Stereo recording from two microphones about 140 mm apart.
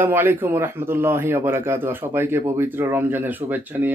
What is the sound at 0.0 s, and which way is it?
A man's voice, 15° right (ahead or behind).